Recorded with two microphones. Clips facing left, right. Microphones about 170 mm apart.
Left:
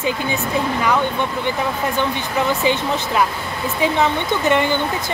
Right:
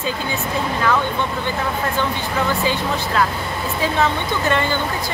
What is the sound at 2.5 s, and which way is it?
Speech, 20° left (ahead or behind).